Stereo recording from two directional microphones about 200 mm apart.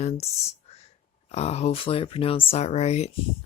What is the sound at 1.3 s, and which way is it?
Speech, 30° left (ahead or behind).